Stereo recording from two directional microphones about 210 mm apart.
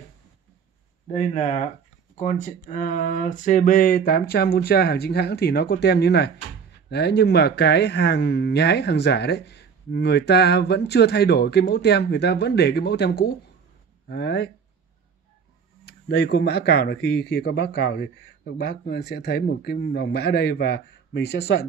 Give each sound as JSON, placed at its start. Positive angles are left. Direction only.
{"t": 1.1, "sound": "speech", "side_deg": 35}
{"t": 15.8, "sound": "speech", "side_deg": 50}